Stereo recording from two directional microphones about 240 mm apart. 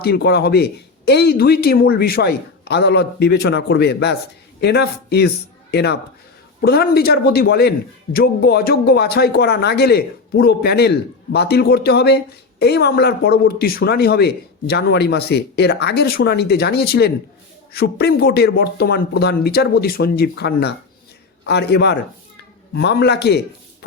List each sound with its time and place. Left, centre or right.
0.0 s speech: left